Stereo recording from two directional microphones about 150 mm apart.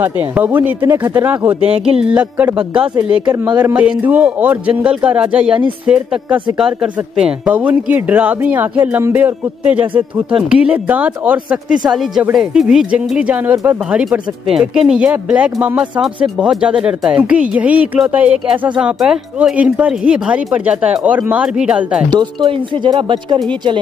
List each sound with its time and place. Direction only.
0.0 s speech: 15° right (ahead or behind)
1.7 s music: 45° right (ahead or behind)
2.0 s speech: 10° right (ahead or behind)
22.1 s speech: 30° right (ahead or behind)